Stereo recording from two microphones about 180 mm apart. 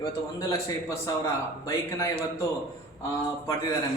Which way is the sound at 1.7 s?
15° left (ahead or behind).